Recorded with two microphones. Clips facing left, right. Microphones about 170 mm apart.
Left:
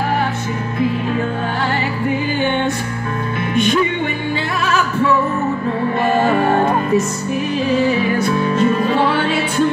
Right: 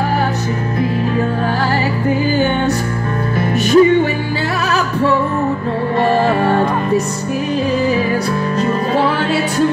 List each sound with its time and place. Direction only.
3.3 s music: 40° right (ahead or behind)
8.3 s music: 35° right (ahead or behind)